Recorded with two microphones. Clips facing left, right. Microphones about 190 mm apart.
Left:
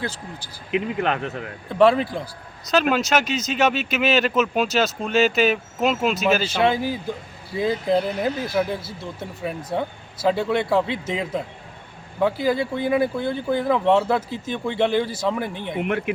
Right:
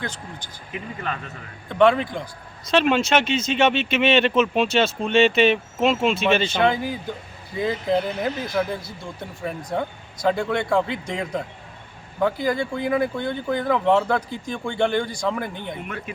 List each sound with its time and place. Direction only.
0.1 s speech: 10° left (ahead or behind)
0.7 s speech: 70° left (ahead or behind)
1.7 s speech: 5° left (ahead or behind)
15.8 s speech: 65° left (ahead or behind)